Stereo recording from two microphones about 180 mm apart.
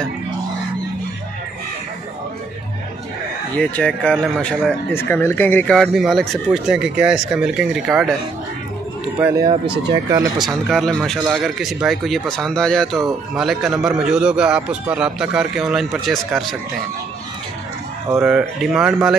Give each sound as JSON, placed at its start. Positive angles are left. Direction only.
{"t": 3.5, "sound": "a man's voice", "side_deg": 5}
{"t": 5.8, "sound": "a man's voice", "side_deg": 0}
{"t": 9.2, "sound": "speech", "side_deg": -15}
{"t": 10.5, "sound": "a man's voice", "side_deg": 0}
{"t": 18.1, "sound": "speech", "side_deg": -10}